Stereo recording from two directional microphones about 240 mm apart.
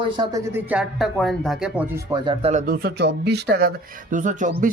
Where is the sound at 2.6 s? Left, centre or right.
Right.